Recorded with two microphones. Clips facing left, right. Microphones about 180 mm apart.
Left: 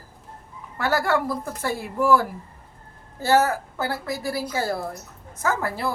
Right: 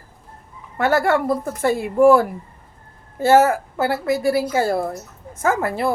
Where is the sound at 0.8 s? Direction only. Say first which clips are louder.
Right 5 dB; 25° right (ahead or behind).